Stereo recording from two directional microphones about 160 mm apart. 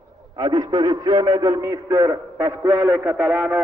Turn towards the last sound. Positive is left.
turn(degrees=-5)  # may be behind; listen again after turning